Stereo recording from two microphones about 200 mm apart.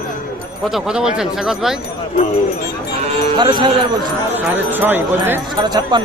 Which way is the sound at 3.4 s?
25° right (ahead or behind).